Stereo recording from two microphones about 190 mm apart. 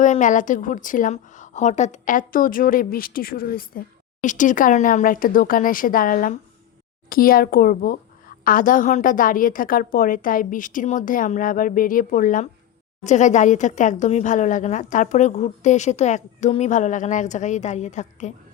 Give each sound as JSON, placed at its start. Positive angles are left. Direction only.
{"t": 0.0, "sound": "a woman's voice", "side_deg": 40}